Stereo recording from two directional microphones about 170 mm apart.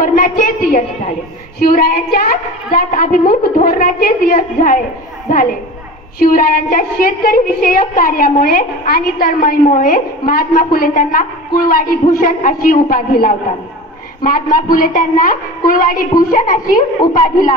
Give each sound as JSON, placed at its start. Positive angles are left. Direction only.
{"t": 0.0, "sound": "a woman's voice", "side_deg": 50}
{"t": 1.6, "sound": "a woman's voice", "side_deg": 60}
{"t": 6.1, "sound": "a woman's voice", "side_deg": 60}